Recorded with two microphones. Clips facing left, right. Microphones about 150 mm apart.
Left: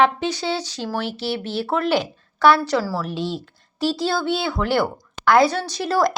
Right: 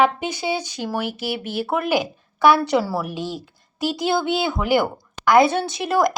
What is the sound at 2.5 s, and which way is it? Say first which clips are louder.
Speech: right 2 dB; 20° right (ahead or behind).